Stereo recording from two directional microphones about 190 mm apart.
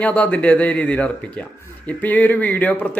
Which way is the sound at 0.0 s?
5° left (ahead or behind).